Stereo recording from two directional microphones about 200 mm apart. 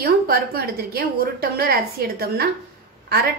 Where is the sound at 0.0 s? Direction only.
50° right (ahead or behind).